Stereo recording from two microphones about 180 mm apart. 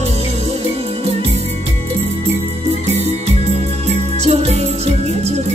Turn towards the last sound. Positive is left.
turn(degrees=-35)  # may be behind; listen again after turning